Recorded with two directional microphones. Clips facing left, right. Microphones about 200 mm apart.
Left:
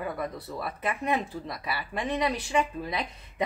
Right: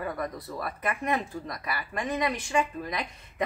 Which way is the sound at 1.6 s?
25° left (ahead or behind).